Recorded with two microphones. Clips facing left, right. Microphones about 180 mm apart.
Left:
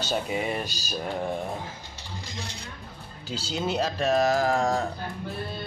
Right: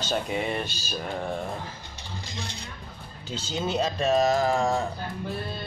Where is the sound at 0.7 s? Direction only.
40° left (ahead or behind).